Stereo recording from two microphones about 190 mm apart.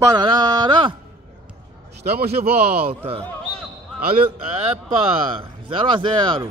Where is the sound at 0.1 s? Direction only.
20° right (ahead or behind).